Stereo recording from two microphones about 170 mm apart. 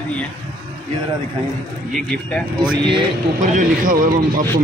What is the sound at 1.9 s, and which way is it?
Speech, 5° left (ahead or behind).